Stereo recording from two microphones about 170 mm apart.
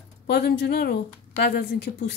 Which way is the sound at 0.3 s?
80° left.